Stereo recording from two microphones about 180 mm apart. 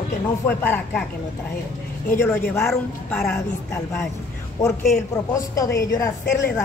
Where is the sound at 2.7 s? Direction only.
Centre (ahead or behind).